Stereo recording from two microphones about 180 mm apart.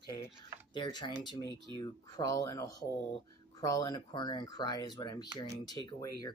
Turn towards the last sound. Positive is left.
turn(degrees=20)  # may be behind; listen again after turning